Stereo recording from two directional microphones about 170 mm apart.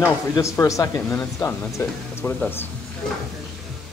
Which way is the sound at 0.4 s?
20° left (ahead or behind).